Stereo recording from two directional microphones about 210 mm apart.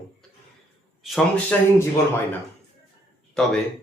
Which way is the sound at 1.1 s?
10° left (ahead or behind).